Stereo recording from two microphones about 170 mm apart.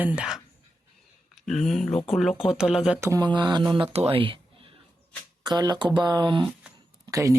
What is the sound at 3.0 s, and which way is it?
Speech, 20° right (ahead or behind).